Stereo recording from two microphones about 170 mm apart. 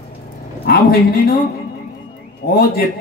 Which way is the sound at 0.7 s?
65° left (ahead or behind).